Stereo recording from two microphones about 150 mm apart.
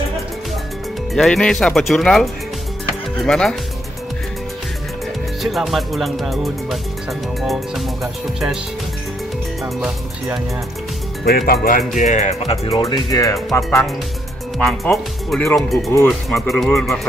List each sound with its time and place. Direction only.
1.1 s speech: 5° left (ahead or behind)
5.4 s speech: centre (ahead or behind)
9.6 s speech: centre (ahead or behind)
11.2 s speech: 85° left
11.9 s speech: 55° left (ahead or behind)
12.8 s speech: 25° left (ahead or behind)
13.7 s speech: 5° left (ahead or behind)